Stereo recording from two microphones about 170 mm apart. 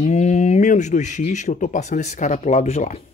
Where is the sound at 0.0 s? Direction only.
40° left (ahead or behind).